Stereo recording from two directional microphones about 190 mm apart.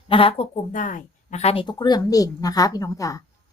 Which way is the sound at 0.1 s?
30° left (ahead or behind).